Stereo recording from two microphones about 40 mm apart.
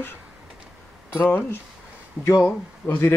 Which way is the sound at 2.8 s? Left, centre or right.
Left.